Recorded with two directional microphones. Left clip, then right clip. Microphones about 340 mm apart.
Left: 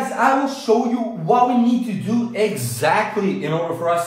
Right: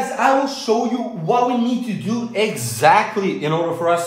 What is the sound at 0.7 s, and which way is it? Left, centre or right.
Speech, centre.